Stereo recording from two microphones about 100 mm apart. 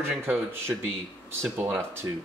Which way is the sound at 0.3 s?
25° right (ahead or behind).